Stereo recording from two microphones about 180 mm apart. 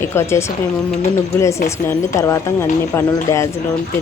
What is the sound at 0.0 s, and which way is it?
Speech, 15° left (ahead or behind).